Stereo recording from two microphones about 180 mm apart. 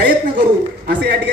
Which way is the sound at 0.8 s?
60° right (ahead or behind).